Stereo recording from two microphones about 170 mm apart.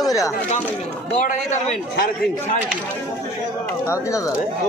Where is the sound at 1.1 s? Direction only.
50° left (ahead or behind).